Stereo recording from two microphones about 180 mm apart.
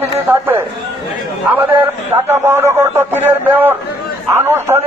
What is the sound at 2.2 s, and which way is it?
A man's voice, 15° right (ahead or behind).